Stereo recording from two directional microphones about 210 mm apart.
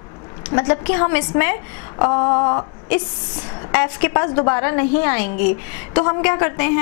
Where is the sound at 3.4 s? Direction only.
20° left (ahead or behind).